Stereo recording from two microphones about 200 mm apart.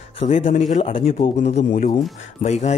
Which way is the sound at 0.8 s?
25° left (ahead or behind).